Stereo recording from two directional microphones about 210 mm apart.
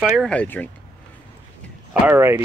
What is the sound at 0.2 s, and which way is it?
Speech, 5° left (ahead or behind).